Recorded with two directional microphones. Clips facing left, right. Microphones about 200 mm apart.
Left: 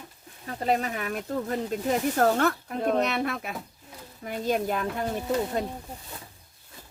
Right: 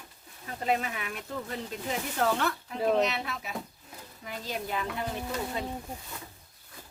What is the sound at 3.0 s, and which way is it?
Speech, 55° left (ahead or behind).